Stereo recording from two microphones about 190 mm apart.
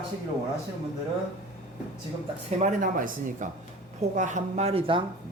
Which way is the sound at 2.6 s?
45° right (ahead or behind).